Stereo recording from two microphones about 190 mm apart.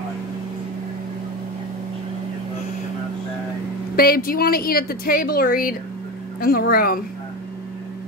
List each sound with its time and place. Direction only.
3.9 s a woman's voice: 50° left (ahead or behind)